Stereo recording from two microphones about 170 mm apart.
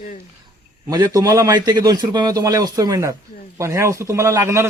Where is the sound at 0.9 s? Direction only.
20° right (ahead or behind).